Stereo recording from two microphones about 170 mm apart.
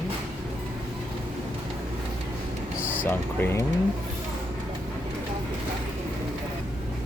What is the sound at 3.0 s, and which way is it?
Speech, 15° left (ahead or behind).